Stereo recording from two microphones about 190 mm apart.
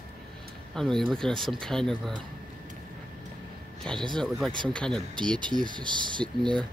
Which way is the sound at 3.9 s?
5° left (ahead or behind).